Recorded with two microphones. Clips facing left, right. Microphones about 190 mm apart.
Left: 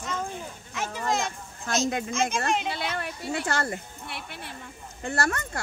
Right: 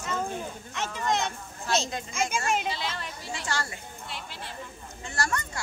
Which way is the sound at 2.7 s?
55° left (ahead or behind).